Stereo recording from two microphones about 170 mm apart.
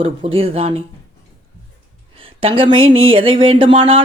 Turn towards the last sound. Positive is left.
turn(degrees=-30)  # may be behind; listen again after turning